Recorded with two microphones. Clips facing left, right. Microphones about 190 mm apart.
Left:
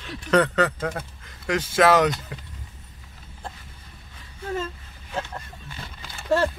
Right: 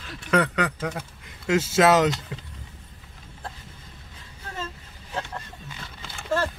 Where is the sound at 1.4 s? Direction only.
25° right (ahead or behind).